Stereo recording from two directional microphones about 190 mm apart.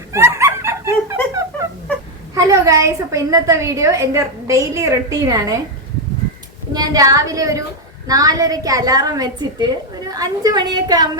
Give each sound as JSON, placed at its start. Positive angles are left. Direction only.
{"t": 0.1, "sound": "snicker", "side_deg": -15}
{"t": 2.3, "sound": "a woman's voice", "side_deg": -15}
{"t": 6.7, "sound": "a woman's voice", "side_deg": -20}